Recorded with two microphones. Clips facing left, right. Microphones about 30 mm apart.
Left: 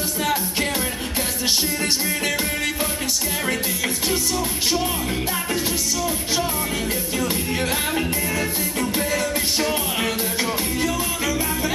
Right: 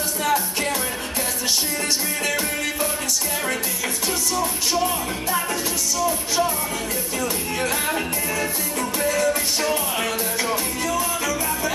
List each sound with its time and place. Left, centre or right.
0.2 s music: centre
2.2 s music: centre